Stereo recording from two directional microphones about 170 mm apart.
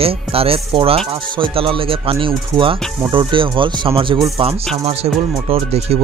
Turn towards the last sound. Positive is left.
turn(degrees=-35)  # may be behind; listen again after turning